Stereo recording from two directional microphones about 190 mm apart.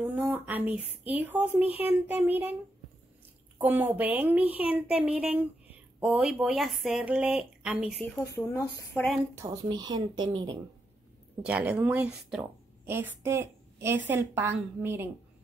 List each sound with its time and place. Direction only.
0.0 s speech: 10° right (ahead or behind)
3.5 s speech: 10° right (ahead or behind)
8.7 s speech: 15° left (ahead or behind)
9.3 s a woman's voice: 20° right (ahead or behind)
11.4 s speech: 5° right (ahead or behind)